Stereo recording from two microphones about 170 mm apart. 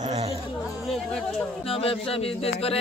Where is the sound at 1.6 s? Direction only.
35° left (ahead or behind).